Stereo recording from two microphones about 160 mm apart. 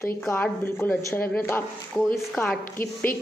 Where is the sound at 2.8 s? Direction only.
60° left (ahead or behind).